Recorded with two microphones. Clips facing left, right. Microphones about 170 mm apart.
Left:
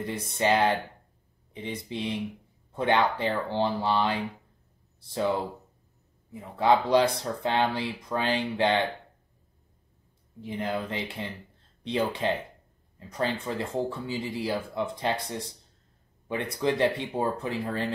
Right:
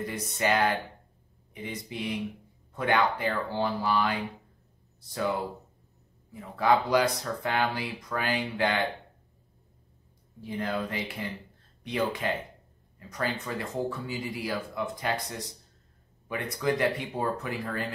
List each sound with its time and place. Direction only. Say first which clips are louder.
0.0 s speech: left 2 dB; 25° left (ahead or behind)
6.3 s speech: left 2 dB; 25° left (ahead or behind)
10.4 s speech: even; 20° left (ahead or behind)